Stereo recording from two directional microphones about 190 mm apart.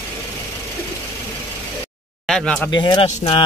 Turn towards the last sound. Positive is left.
turn(degrees=30)  # may be behind; listen again after turning